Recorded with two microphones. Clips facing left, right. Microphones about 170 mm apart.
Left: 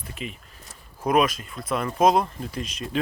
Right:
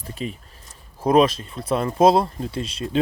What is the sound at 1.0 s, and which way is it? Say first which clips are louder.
Speech: right 5 dB; 30° right (ahead or behind).